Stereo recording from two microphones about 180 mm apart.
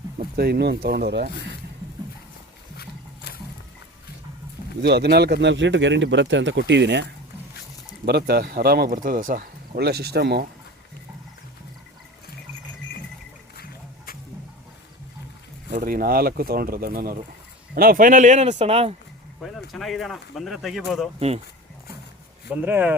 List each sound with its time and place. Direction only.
0.3 s speech: 60° right (ahead or behind)
2.7 s wild animals: 65° left (ahead or behind)
4.8 s speech: 65° right (ahead or behind)
8.0 s speech: 60° right (ahead or behind)
13.6 s music: 55° left (ahead or behind)
15.7 s speech: 55° right (ahead or behind); by 18.9 s 35° right (ahead or behind)
19.4 s speech: centre (ahead or behind)
21.2 s speech: 35° right (ahead or behind)
22.6 s speech: 10° right (ahead or behind)